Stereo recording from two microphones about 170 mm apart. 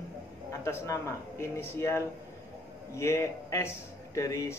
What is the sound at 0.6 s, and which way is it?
Speech, 15° left (ahead or behind).